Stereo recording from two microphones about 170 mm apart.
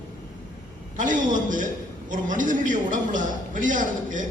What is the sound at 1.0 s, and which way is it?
A man's voice, 50° right (ahead or behind).